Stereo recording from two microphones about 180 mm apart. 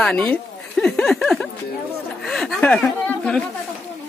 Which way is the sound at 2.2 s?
Centre (ahead or behind).